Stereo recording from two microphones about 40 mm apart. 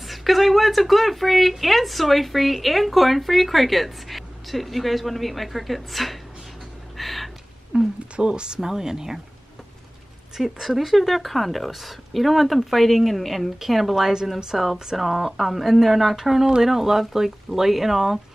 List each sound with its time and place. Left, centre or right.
0.0 s speech: centre
7.0 s a sound: centre
7.7 s a sound: right
8.2 s speech: right
8.5 s speech: centre
10.3 s speech: centre